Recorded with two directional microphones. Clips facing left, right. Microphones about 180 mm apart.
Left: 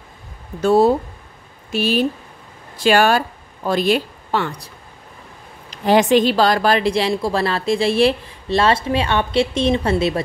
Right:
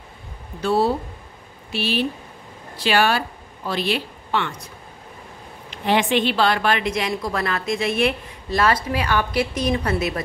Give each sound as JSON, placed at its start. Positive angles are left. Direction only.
{"t": 0.6, "sound": "speech", "side_deg": 45}
{"t": 5.7, "sound": "a woman's voice", "side_deg": 40}